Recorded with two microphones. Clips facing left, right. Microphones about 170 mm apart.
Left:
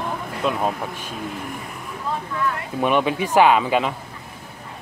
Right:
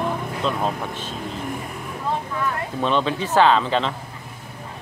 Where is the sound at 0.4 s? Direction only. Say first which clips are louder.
Left 3 dB; 10° left (ahead or behind).